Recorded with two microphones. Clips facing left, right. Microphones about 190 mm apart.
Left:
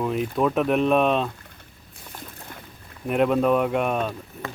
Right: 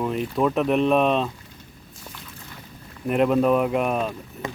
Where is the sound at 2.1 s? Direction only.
50° left (ahead or behind).